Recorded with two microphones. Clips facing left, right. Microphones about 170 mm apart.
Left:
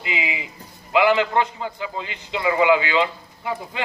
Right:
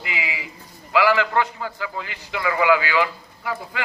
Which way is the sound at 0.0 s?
20° left (ahead or behind).